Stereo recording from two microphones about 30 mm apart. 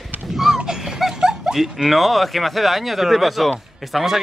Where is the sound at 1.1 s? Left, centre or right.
Right.